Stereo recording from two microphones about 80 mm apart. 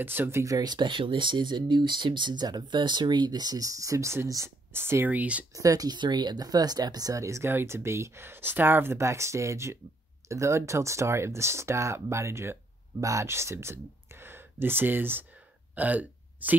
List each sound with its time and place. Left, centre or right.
0.0 s speech: right
0.6 s speech: right; by 5.5 s centre
5.5 s speech: right
5.9 s speech: right
15.7 s hiccup: centre